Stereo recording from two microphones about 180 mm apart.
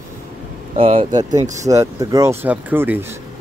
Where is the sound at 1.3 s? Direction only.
40° right (ahead or behind).